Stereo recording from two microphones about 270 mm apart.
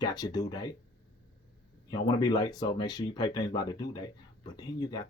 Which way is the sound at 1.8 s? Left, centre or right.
Centre.